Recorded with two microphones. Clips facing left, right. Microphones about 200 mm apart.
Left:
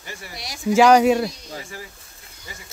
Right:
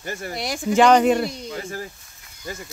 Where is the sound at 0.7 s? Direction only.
5° left (ahead or behind).